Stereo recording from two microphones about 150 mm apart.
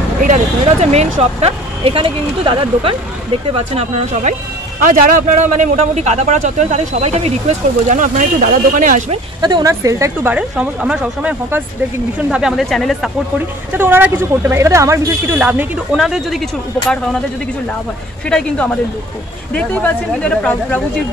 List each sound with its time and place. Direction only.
0.2 s speech: 55° right (ahead or behind); by 2.9 s 35° right (ahead or behind)
3.5 s a man's voice: 45° right (ahead or behind)
4.8 s a man's voice: 65° right (ahead or behind); by 7.3 s 45° right (ahead or behind)
7.9 s speech: 60° right (ahead or behind)
9.4 s speech: 25° right (ahead or behind)
10.3 s speech: 5° right (ahead or behind)
13.7 s speech: 15° right (ahead or behind)
19.5 s speech: 10° left (ahead or behind)